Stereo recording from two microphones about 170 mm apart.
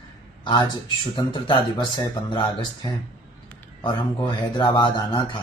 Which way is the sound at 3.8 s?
30° left (ahead or behind).